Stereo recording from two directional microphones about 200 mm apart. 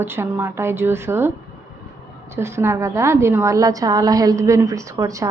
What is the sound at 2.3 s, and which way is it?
A woman's voice, 15° right (ahead or behind).